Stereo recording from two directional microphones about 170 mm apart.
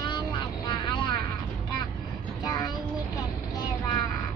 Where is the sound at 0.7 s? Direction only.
25° left (ahead or behind).